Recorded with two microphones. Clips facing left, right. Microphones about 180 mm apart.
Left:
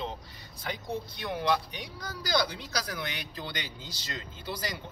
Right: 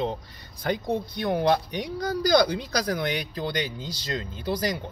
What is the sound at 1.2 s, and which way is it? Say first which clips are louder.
Speech: right 6 dB; 50° right (ahead or behind).